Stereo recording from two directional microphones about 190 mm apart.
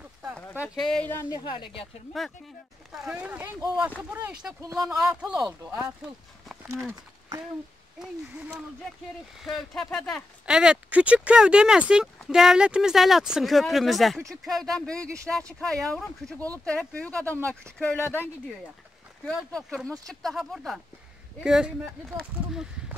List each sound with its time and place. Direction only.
0.6 s speech: centre (ahead or behind); by 1.9 s 25° left (ahead or behind)
2.1 s speech: centre (ahead or behind)
6.9 s speech: 15° right (ahead or behind)
9.4 s speech: centre (ahead or behind)
22.5 s a sound: 5° right (ahead or behind)